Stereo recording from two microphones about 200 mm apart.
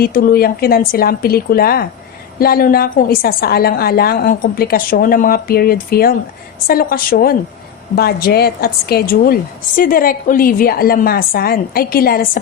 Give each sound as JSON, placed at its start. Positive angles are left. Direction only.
{"t": 0.0, "sound": "a woman's voice", "side_deg": 45}